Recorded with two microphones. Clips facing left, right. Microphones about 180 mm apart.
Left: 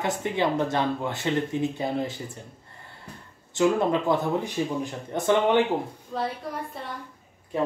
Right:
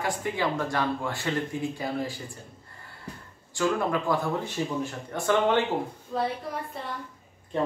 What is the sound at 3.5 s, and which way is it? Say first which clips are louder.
Speech: left 4 dB; 20° left (ahead or behind).